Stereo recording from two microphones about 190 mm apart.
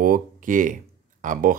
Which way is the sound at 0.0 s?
45° right (ahead or behind).